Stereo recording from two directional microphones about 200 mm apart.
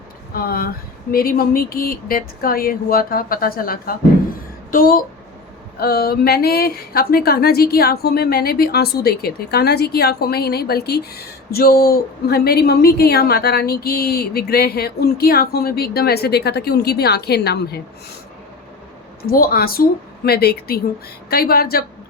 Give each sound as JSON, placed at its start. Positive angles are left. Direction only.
{"t": 0.4, "sound": "speech", "side_deg": 50}
{"t": 19.3, "sound": "speech", "side_deg": 50}